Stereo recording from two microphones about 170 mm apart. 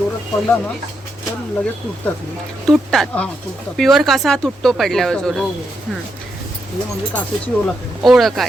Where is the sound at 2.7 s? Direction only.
Centre (ahead or behind).